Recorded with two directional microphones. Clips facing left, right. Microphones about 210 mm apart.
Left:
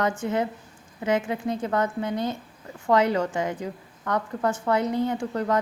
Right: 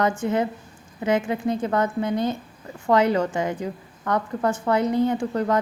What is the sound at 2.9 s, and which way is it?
A woman's voice, 30° right (ahead or behind).